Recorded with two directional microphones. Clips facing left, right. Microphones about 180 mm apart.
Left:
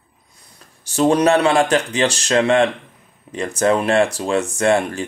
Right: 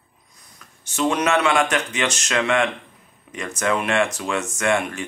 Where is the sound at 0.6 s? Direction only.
35° left (ahead or behind).